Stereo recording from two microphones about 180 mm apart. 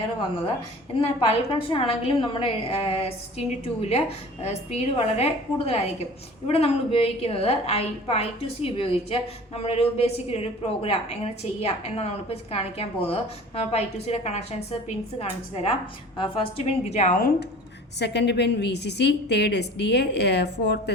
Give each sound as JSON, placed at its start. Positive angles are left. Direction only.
{"t": 0.9, "sound": "a woman's voice", "side_deg": 30}
{"t": 18.0, "sound": "a woman's voice", "side_deg": 70}